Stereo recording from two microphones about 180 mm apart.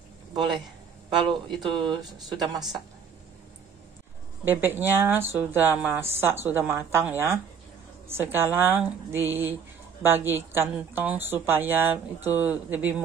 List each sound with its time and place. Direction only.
0.3 s a man's voice: 25° right (ahead or behind)
1.6 s speech: 25° right (ahead or behind)
4.5 s speech: 10° right (ahead or behind)